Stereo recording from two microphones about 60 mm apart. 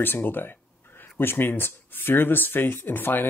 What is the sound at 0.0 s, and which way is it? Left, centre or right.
Speech, left.